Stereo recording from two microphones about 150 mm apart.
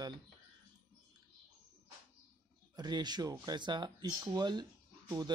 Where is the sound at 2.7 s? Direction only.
30° right (ahead or behind).